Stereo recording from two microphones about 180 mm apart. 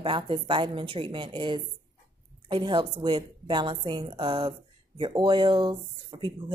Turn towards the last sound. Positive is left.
turn(degrees=-25)  # may be behind; listen again after turning